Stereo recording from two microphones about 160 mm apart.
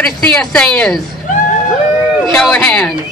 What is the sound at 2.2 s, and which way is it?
Speech, 5° left (ahead or behind).